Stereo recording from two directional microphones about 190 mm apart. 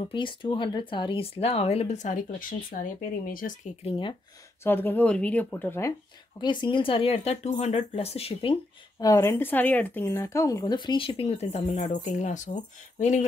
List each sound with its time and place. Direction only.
0.1 s speech: 25° left (ahead or behind); by 3.7 s 45° left (ahead or behind)
4.6 s speech: 10° left (ahead or behind)
6.4 s speech: 25° left (ahead or behind)
9.0 s speech: 15° left (ahead or behind); by 12.4 s 40° left (ahead or behind)